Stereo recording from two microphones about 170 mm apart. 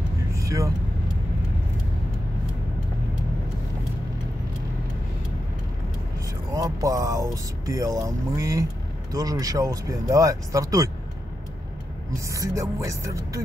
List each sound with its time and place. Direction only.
0.4 s vehicle: 20° right (ahead or behind)
6.5 s speech: 20° right (ahead or behind)
12.3 s speech: 20° right (ahead or behind)